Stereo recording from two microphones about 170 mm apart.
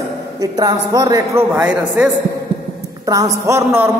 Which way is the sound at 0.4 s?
20° right (ahead or behind).